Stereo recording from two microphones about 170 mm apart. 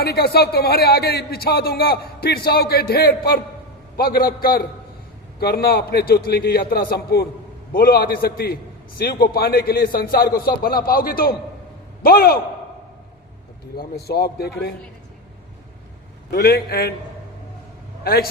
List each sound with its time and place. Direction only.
0.0 s speech: 70° left (ahead or behind)
13.7 s a man's voice: 65° left (ahead or behind)
16.3 s speech: 65° left (ahead or behind)
18.0 s a man's voice: 65° left (ahead or behind)